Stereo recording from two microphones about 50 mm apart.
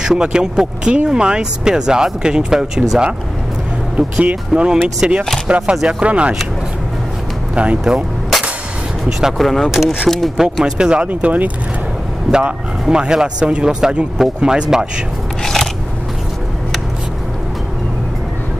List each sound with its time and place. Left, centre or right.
0.0 s speech: centre
3.9 s speech: right
7.5 s speech: right
9.4 s speech: centre
10.6 s speech: centre
11.1 s speech: right
12.3 s speech: centre
15.4 s scissors: centre